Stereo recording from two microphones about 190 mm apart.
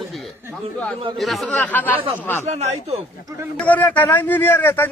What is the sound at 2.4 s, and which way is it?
Speech, 35° right (ahead or behind).